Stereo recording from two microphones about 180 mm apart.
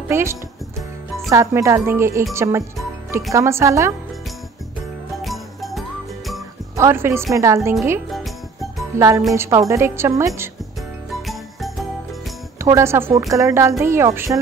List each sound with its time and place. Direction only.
0.1 s a woman's voice: 15° right (ahead or behind)
5.1 s music: centre (ahead or behind)
6.8 s a woman's voice: 15° right (ahead or behind)
8.9 s a woman's voice: 15° right (ahead or behind)
11.2 s jingle: centre (ahead or behind)
12.5 s a woman's voice: 15° right (ahead or behind)